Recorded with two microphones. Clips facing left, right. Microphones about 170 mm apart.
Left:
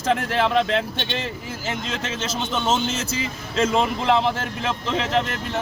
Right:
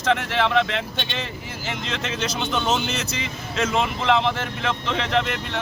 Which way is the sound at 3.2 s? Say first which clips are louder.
Left 6 dB; 35° left (ahead or behind).